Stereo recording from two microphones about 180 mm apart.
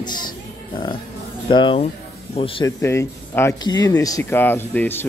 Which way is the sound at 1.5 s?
25° left (ahead or behind).